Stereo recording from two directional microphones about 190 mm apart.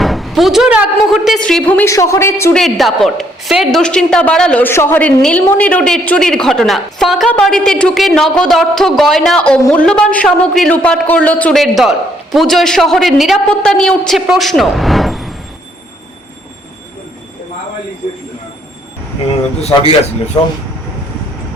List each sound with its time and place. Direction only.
0.0 s a woman's voice: centre (ahead or behind)
2.6 s a woman's voice: centre (ahead or behind)
9.6 s a man's voice: 15° left (ahead or behind); by 15.4 s centre (ahead or behind)